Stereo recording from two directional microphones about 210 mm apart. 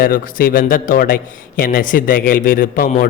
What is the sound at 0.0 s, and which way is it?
A man's voice, 45° left (ahead or behind).